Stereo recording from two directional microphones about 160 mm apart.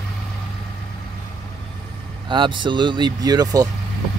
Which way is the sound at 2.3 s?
30° right (ahead or behind).